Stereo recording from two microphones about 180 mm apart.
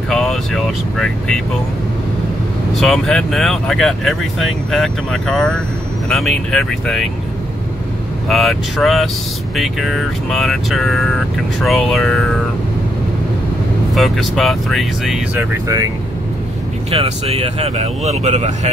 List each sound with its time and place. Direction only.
0.1 s speech: centre (ahead or behind)
2.7 s speech: centre (ahead or behind)
8.3 s speech: centre (ahead or behind)
13.9 s speech: centre (ahead or behind)
15.5 s speech: 20° right (ahead or behind)
16.9 s speech: 35° right (ahead or behind)